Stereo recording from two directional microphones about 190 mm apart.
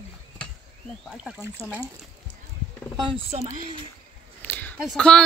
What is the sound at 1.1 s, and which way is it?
Speech, 5° right (ahead or behind).